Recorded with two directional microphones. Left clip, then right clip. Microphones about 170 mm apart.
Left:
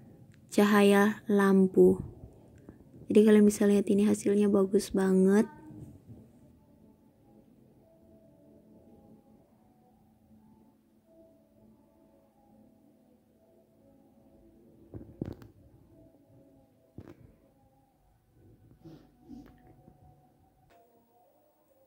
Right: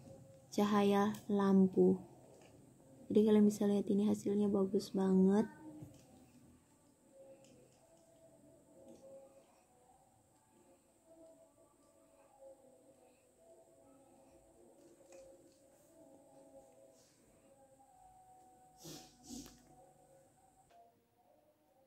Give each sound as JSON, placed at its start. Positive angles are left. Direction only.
{"t": 0.5, "sound": "a woman's voice", "side_deg": 30}
{"t": 3.1, "sound": "a woman's voice", "side_deg": 25}